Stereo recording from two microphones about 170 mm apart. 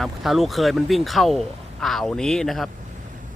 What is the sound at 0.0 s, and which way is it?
A man's voice, centre (ahead or behind).